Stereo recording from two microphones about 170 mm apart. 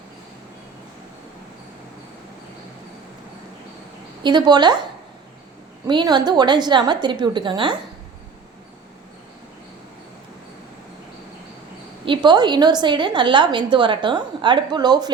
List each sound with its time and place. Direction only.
4.2 s a woman's voice: 25° right (ahead or behind)
5.9 s a woman's voice: 25° right (ahead or behind)
12.0 s a woman's voice: 30° right (ahead or behind)